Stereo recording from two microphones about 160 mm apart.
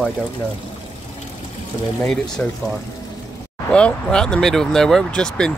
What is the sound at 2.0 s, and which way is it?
Speech, 5° left (ahead or behind).